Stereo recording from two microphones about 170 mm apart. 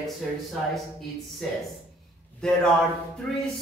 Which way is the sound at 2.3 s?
5° left (ahead or behind).